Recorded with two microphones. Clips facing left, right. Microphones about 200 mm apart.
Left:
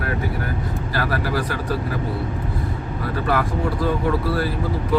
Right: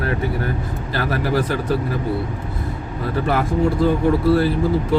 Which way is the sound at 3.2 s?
25° right (ahead or behind).